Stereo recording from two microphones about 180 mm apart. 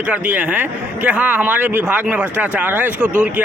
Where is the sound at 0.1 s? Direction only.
10° right (ahead or behind).